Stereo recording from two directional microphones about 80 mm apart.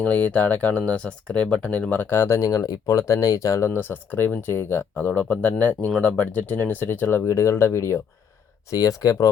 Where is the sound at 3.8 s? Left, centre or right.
Left.